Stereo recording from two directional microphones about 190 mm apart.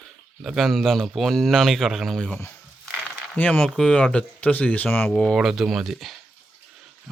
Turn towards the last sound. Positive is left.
turn(degrees=0)  # may be behind; listen again after turning